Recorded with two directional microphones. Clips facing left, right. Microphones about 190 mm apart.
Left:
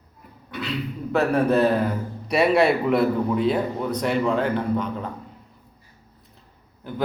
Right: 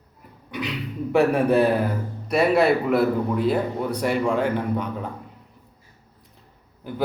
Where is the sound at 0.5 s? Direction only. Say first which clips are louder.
Even; 15° right (ahead or behind).